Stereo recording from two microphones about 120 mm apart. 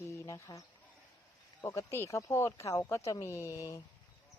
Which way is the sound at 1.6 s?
25° left (ahead or behind).